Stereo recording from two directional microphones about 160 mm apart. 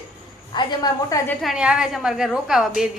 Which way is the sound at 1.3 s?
Centre (ahead or behind).